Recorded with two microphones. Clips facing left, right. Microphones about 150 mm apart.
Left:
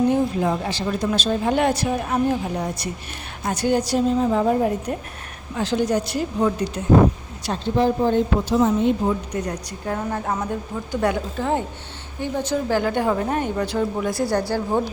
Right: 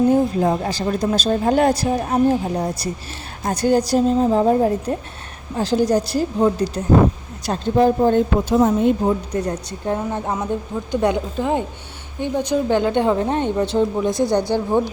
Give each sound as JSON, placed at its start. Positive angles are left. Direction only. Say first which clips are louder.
{"t": 0.1, "sound": "a woman's voice", "louder": "right 4 dB", "side_deg": -40}
{"t": 9.0, "sound": "a woman's voice", "louder": "right 3 dB", "side_deg": -30}
{"t": 14.3, "sound": "a woman's voice", "louder": "right 3 dB", "side_deg": 5}